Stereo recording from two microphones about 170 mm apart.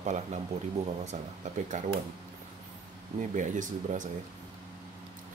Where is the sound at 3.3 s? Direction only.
50° right (ahead or behind).